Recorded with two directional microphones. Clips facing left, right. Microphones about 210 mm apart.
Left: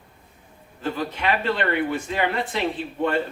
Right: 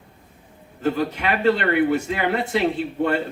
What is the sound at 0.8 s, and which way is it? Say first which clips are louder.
Speech: right 5 dB; 40° right (ahead or behind).